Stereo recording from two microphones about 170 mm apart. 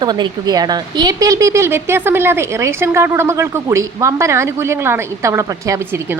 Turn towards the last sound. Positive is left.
turn(degrees=-20)  # may be behind; listen again after turning